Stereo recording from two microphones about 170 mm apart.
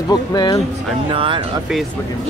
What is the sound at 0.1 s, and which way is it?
Speech, 25° left (ahead or behind).